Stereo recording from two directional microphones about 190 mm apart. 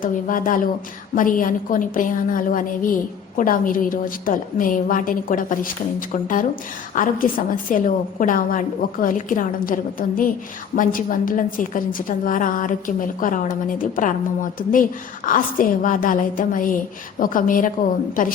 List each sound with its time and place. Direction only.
0.0 s a woman's voice: 45° left (ahead or behind)